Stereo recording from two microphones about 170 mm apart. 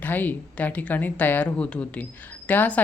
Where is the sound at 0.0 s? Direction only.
10° left (ahead or behind).